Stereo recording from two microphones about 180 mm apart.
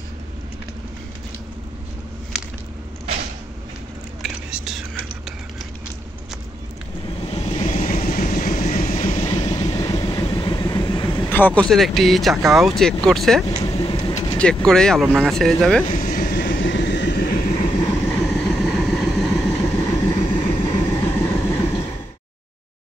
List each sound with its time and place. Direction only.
4.2 s whispering: 5° right (ahead or behind)
7.2 s vehicle: 35° left (ahead or behind)
9.3 s train: 20° left (ahead or behind)
11.2 s speech: 10° left (ahead or behind)
13.7 s vehicle: 25° left (ahead or behind)
14.4 s speech: 5° left (ahead or behind)
15.8 s vehicle: 45° left (ahead or behind)
16.4 s vehicle: 90° left; by 17.6 s 50° left (ahead or behind)
17.8 s vehicle: 10° left (ahead or behind)
19.6 s vehicle: 15° left (ahead or behind)
20.2 s vehicle: 35° left (ahead or behind)
20.9 s vehicle: 15° left (ahead or behind)